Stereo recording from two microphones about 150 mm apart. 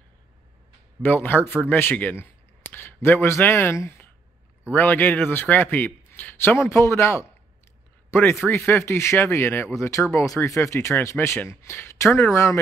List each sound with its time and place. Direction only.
1.0 s a man's voice: 10° left (ahead or behind)